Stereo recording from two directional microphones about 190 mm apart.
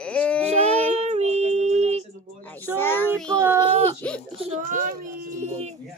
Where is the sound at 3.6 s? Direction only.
30° right (ahead or behind).